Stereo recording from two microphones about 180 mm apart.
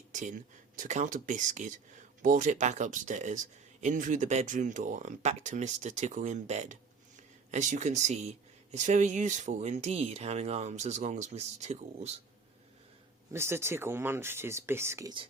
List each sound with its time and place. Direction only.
0.1 s a sound: 45° right (ahead or behind)
0.8 s speech: 45° right (ahead or behind)
13.3 s speech: 15° right (ahead or behind)